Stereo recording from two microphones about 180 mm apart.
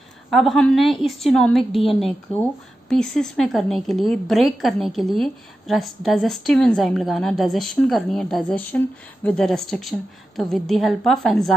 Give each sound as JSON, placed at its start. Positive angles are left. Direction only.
{"t": 0.3, "sound": "a woman's voice", "side_deg": 0}